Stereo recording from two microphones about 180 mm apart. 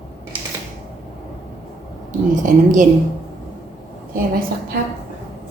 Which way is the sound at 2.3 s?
45° right (ahead or behind).